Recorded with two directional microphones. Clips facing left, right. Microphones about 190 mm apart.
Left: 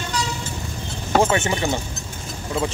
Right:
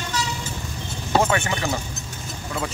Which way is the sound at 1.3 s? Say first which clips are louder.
Left 2 dB; 25° left (ahead or behind).